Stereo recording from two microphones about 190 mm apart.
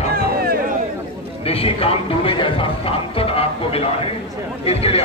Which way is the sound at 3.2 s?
30° left (ahead or behind).